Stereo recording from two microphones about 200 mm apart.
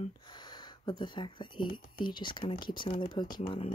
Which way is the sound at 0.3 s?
20° left (ahead or behind).